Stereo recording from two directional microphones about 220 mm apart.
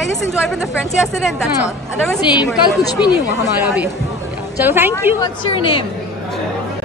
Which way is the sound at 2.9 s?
20° left (ahead or behind).